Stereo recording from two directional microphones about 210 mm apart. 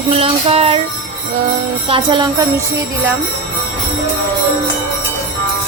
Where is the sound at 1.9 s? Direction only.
25° right (ahead or behind).